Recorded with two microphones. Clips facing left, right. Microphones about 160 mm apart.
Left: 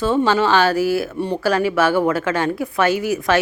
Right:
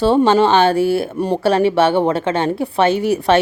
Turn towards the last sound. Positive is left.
turn(degrees=-30)  # may be behind; listen again after turning